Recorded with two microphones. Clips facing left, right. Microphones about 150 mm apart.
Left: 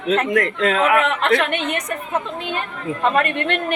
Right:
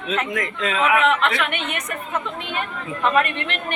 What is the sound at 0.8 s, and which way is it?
Speech, 45° left (ahead or behind).